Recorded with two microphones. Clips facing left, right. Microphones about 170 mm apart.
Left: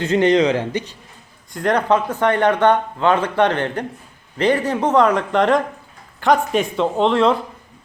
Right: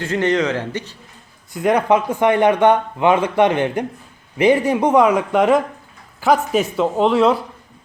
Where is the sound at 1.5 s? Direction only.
10° right (ahead or behind).